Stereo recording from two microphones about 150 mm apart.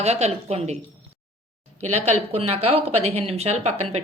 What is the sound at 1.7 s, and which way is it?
Speech, 45° right (ahead or behind).